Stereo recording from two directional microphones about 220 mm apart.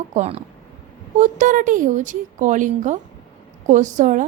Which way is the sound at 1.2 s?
35° right (ahead or behind).